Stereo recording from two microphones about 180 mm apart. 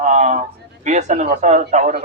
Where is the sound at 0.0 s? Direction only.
40° right (ahead or behind).